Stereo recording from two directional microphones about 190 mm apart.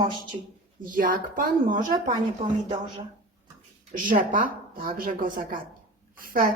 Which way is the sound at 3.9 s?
45° right (ahead or behind).